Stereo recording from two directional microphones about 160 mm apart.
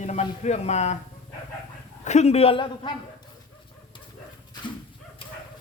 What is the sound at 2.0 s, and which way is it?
Speech, 45° left (ahead or behind).